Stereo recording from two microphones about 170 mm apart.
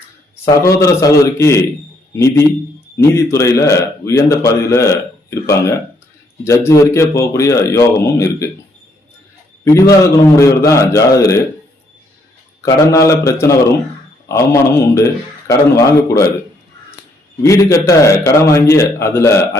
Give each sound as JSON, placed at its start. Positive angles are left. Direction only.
{"t": 0.4, "sound": "a man's voice", "side_deg": 20}
{"t": 10.3, "sound": "a man's voice", "side_deg": 20}
{"t": 12.6, "sound": "a man's voice", "side_deg": 20}
{"t": 17.4, "sound": "a man's voice", "side_deg": 20}